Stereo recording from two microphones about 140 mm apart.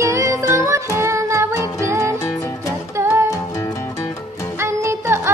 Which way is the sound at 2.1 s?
25° left (ahead or behind).